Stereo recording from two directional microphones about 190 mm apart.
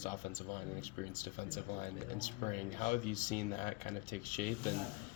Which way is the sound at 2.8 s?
45° left (ahead or behind).